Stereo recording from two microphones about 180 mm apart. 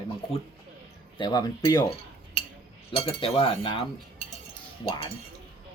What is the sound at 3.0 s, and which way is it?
Speech, 30° left (ahead or behind).